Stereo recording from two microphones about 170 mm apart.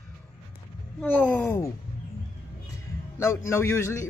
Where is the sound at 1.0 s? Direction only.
10° left (ahead or behind).